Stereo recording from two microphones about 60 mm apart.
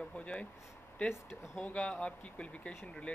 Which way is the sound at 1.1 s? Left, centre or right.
Left.